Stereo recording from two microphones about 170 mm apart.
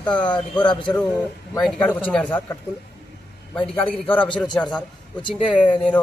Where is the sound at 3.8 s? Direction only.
10° left (ahead or behind).